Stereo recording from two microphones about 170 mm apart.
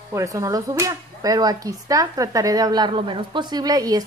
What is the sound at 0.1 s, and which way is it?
Speech, 20° right (ahead or behind).